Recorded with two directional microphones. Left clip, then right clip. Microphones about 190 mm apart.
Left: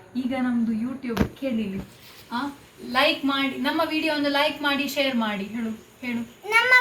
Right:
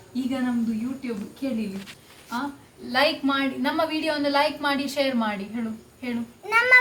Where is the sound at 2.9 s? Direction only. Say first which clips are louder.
Even; 5° right (ahead or behind).